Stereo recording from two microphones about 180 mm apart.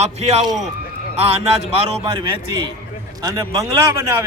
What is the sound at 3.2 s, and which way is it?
Speech, 20° right (ahead or behind).